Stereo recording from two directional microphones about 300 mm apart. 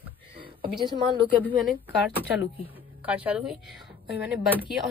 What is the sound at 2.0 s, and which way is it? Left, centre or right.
A woman's voice, centre.